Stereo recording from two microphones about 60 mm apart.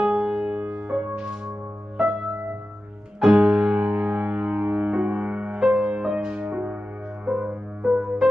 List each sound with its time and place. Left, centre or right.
0.0 s music: centre
3.2 s music: centre